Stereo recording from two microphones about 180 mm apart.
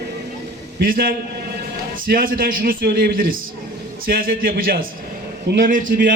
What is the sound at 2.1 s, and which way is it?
A man's voice, 55° right (ahead or behind).